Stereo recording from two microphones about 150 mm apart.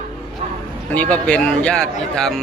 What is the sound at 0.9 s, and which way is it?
Speech, 10° left (ahead or behind).